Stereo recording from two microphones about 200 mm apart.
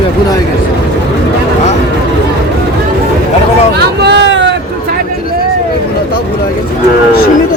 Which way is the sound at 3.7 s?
55° right (ahead or behind).